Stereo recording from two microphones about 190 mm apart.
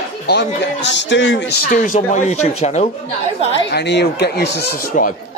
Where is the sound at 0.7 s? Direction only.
70° left (ahead or behind); by 2.9 s 35° left (ahead or behind).